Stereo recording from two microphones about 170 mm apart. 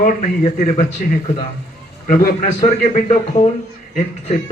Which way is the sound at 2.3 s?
45° left (ahead or behind).